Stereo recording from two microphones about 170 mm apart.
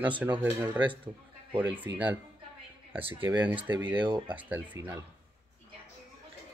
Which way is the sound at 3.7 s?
25° right (ahead or behind).